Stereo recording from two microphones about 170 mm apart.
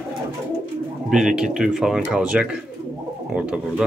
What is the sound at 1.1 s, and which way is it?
Speech, 5° right (ahead or behind).